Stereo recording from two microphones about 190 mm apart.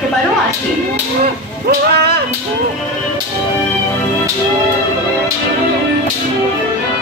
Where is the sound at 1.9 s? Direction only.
60° right (ahead or behind).